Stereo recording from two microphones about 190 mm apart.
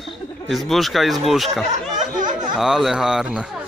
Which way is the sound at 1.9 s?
40° right (ahead or behind).